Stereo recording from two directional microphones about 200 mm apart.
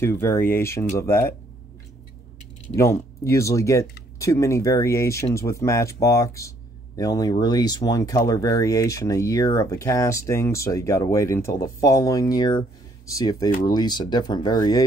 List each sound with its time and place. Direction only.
0.0 s speech: 10° left (ahead or behind)
2.8 s speech: 15° left (ahead or behind)